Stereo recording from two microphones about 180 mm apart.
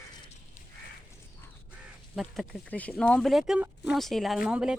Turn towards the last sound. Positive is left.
turn(degrees=-5)  # may be behind; listen again after turning